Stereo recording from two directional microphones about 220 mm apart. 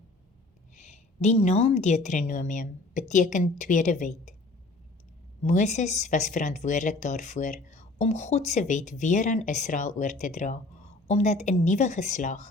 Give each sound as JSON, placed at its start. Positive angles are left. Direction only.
{"t": 0.8, "sound": "speech", "side_deg": 30}
{"t": 5.4, "sound": "speech", "side_deg": 30}